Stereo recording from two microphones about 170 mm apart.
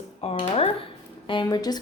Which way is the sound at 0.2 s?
35° left (ahead or behind).